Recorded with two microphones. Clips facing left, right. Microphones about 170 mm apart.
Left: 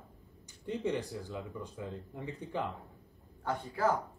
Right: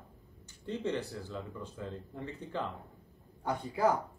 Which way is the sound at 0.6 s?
15° left (ahead or behind).